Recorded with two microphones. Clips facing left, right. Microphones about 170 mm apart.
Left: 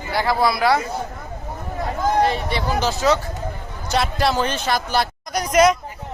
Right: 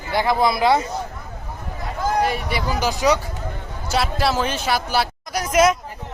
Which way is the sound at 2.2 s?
10° right (ahead or behind).